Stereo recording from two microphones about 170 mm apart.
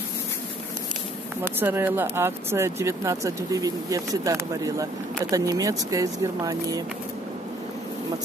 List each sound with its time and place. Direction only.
1.4 s speech: 10° right (ahead or behind)